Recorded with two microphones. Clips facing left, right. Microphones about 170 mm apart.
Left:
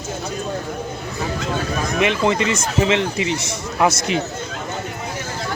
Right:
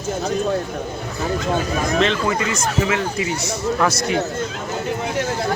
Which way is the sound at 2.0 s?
20° left (ahead or behind).